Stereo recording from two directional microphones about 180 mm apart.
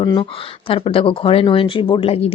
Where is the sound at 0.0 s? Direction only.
25° left (ahead or behind).